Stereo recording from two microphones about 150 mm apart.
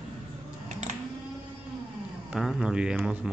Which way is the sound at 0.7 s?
50° right (ahead or behind).